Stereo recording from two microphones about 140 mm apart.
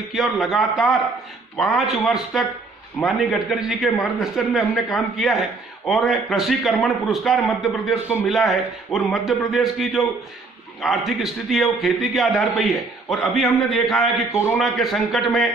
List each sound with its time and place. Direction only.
0.1 s a man's voice: centre (ahead or behind)
14.3 s a man's voice: 20° left (ahead or behind)
14.6 s a man's voice: centre (ahead or behind)